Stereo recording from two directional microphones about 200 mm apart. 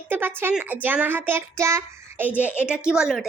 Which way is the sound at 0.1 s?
10° right (ahead or behind).